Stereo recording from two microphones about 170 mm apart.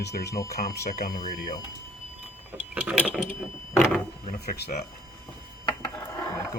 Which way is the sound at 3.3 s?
15° left (ahead or behind).